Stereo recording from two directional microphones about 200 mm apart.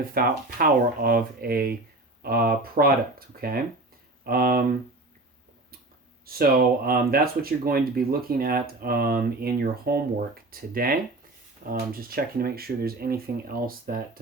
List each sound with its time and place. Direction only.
0.0 s speech: 45° right (ahead or behind)
6.2 s speech: 50° right (ahead or behind)